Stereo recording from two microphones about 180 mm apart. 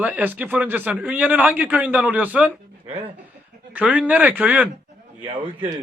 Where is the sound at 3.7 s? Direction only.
5° right (ahead or behind).